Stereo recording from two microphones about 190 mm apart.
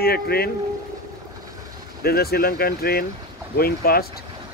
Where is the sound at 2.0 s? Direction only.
55° left (ahead or behind).